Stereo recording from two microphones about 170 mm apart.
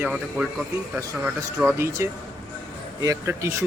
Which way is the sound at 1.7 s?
15° right (ahead or behind).